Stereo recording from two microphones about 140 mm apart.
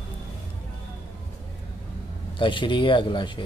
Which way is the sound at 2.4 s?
35° left (ahead or behind).